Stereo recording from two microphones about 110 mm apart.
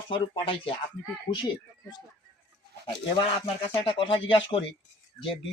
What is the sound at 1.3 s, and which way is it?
Speech, 35° left (ahead or behind).